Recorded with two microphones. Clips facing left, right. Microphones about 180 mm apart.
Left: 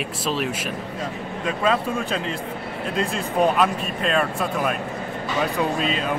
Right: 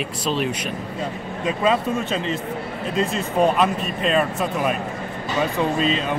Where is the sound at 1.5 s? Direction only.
Centre (ahead or behind).